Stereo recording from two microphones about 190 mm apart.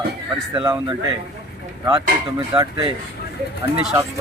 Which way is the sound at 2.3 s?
20° right (ahead or behind).